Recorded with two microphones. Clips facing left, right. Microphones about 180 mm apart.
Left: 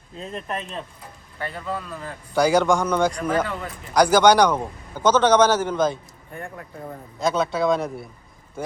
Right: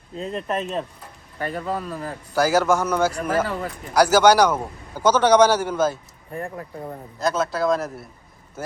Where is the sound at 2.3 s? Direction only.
5° right (ahead or behind).